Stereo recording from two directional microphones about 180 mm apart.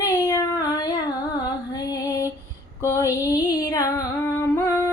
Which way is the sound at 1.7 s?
20° left (ahead or behind).